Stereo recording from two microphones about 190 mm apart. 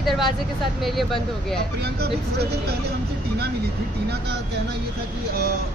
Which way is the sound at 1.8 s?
55° right (ahead or behind).